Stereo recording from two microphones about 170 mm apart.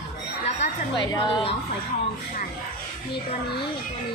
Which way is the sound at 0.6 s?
90° left.